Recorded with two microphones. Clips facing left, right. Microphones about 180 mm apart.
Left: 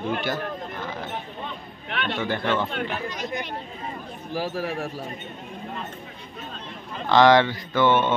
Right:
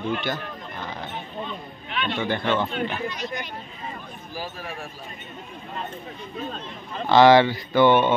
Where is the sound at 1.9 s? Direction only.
65° left (ahead or behind).